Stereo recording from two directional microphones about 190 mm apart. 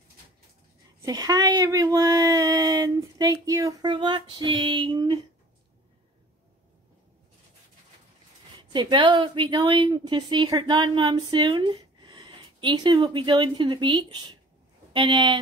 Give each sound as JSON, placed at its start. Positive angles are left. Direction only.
{"t": 1.0, "sound": "a woman's voice", "side_deg": -20}
{"t": 8.7, "sound": "a woman's voice", "side_deg": -25}